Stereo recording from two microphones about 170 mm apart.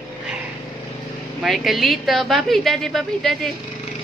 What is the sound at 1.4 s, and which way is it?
A woman's voice, centre (ahead or behind).